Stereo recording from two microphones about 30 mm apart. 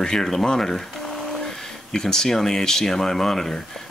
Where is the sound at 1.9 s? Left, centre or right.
Left.